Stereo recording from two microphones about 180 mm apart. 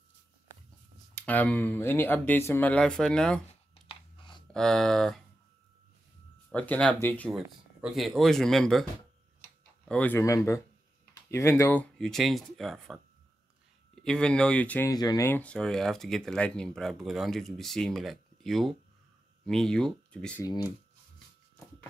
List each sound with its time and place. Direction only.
1.1 s speech: 10° left (ahead or behind)
3.9 s chewing: 25° left (ahead or behind)
4.5 s speech: 5° left (ahead or behind)
6.5 s speech: 10° left (ahead or behind)
7.2 s speech: centre (ahead or behind)
9.4 s tick-tock: 10° left (ahead or behind)
11.2 s speech: 15° left (ahead or behind)
14.0 s speech: 5° left (ahead or behind)
14.9 s speech: 20° left (ahead or behind)
20.4 s speech: 20° left (ahead or behind)